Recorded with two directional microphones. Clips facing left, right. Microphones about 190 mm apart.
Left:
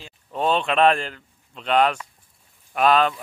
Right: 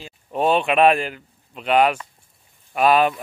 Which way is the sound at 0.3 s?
15° right (ahead or behind).